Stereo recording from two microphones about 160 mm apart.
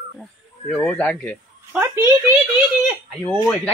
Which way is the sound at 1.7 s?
20° right (ahead or behind).